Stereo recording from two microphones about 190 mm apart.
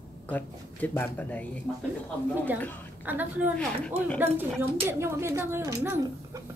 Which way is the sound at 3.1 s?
10° right (ahead or behind).